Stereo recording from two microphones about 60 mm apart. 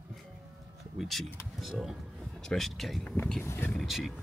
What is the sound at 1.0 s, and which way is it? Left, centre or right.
Speech, centre.